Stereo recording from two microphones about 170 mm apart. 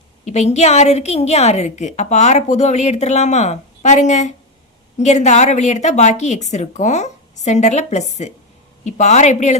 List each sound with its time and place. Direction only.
0.3 s a woman's voice: 40° left (ahead or behind)